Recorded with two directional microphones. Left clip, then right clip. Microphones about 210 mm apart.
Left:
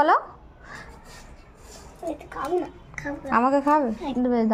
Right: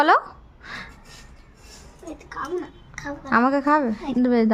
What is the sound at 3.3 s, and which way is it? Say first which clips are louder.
A woman's voice: right 1 dB; 15° right (ahead or behind).